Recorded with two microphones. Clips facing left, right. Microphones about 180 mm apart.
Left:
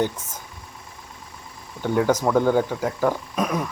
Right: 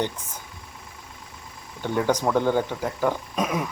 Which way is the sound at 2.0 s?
5° left (ahead or behind).